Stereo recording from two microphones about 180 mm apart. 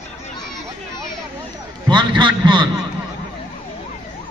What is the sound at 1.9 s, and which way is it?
Heart sounds, 25° right (ahead or behind).